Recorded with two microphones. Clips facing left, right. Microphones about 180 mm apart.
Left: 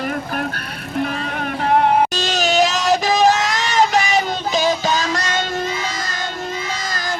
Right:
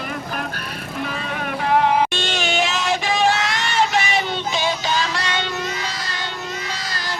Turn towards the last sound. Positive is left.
turn(degrees=45)  # may be behind; listen again after turning